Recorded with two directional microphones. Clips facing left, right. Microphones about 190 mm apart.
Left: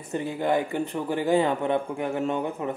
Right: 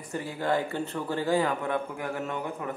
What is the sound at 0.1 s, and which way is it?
Speech, 20° left (ahead or behind).